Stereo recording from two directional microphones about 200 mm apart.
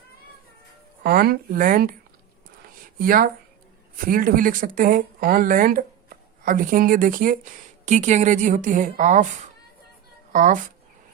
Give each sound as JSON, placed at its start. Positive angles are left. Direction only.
{"t": 1.0, "sound": "speech", "side_deg": -50}
{"t": 2.6, "sound": "a sound", "side_deg": -45}
{"t": 3.9, "sound": "speech", "side_deg": -45}
{"t": 10.3, "sound": "speech", "side_deg": -40}